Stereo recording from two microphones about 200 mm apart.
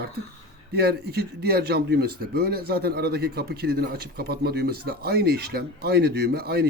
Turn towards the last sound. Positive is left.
turn(degrees=-50)  # may be behind; listen again after turning